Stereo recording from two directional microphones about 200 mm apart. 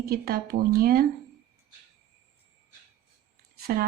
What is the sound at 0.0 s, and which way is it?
Speech, 50° right (ahead or behind).